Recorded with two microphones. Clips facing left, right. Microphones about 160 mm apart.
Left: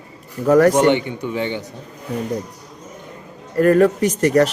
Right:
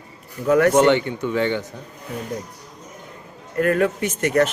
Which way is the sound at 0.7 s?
15° left (ahead or behind).